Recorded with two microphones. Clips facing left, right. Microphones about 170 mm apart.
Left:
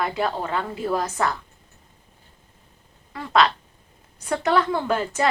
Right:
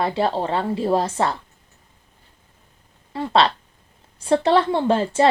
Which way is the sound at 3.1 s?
30° right (ahead or behind).